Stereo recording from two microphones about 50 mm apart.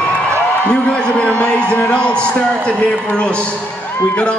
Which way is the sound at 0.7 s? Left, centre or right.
Left.